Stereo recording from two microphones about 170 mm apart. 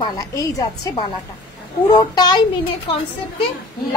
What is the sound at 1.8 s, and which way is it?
Speech, 25° left (ahead or behind).